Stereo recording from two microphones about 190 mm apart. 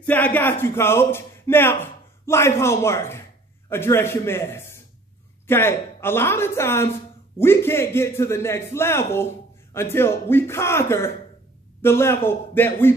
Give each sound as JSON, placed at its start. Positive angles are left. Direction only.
{"t": 0.0, "sound": "a man's voice", "side_deg": 10}